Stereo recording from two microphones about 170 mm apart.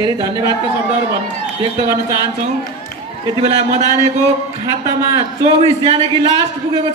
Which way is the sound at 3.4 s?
40° right (ahead or behind).